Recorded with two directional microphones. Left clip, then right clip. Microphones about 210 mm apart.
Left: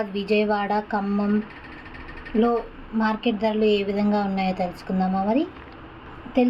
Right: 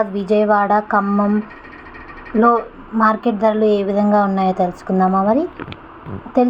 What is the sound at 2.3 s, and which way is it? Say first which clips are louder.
Speech: right 8 dB; 10° right (ahead or behind).